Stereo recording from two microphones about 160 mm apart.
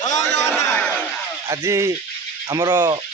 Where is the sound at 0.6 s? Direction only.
15° left (ahead or behind).